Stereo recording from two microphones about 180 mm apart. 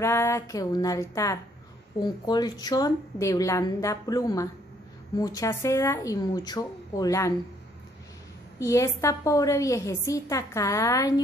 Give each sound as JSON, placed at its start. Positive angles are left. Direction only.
{"t": 0.0, "sound": "a woman's voice", "side_deg": 15}
{"t": 8.5, "sound": "a woman's voice", "side_deg": 15}